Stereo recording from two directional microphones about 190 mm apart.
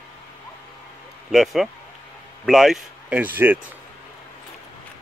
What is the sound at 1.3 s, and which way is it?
A man's voice, centre (ahead or behind).